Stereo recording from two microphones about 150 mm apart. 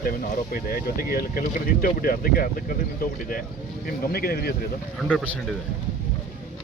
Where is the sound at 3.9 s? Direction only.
85° left.